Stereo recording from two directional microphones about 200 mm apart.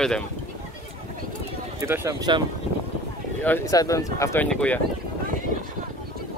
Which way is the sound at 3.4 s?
15° left (ahead or behind).